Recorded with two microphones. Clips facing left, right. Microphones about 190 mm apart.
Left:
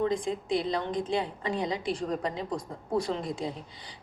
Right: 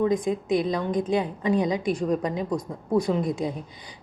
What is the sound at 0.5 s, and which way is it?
A woman's voice, 15° right (ahead or behind).